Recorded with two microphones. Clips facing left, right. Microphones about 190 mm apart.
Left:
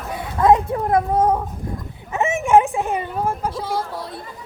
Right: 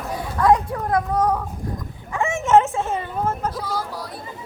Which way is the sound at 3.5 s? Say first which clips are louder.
Left 2 dB; 25° left (ahead or behind).